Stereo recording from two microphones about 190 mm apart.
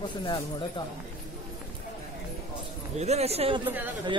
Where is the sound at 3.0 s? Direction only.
35° right (ahead or behind).